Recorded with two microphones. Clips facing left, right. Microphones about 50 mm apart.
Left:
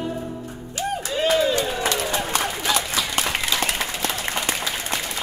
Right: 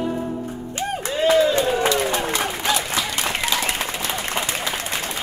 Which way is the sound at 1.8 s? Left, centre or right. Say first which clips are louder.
Right 4 dB; right.